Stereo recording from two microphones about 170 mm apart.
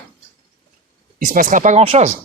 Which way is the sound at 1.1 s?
50° right (ahead or behind).